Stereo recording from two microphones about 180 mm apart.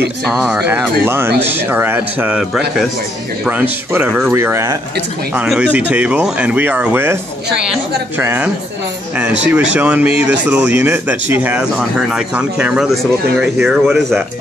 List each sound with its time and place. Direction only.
0.3 s speech: 5° right (ahead or behind)